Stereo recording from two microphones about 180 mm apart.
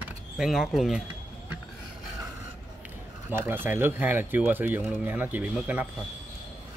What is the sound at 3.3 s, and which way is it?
Speech, 10° right (ahead or behind).